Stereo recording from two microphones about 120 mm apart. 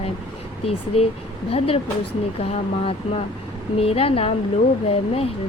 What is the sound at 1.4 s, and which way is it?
Speech, 50° left (ahead or behind).